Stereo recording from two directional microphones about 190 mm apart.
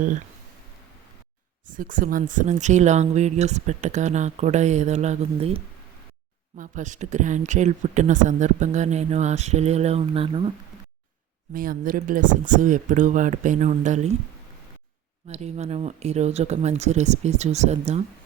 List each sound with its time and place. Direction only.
1.7 s speech: 45° right (ahead or behind); by 10.5 s 30° right (ahead or behind)
11.5 s speech: 50° right (ahead or behind)
15.3 s speech: 35° right (ahead or behind)